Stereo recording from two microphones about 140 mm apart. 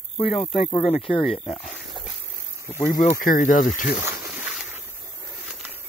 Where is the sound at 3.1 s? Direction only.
70° left (ahead or behind).